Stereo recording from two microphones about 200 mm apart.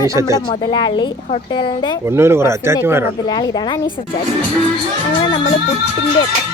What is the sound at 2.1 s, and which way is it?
Speech, 10° right (ahead or behind).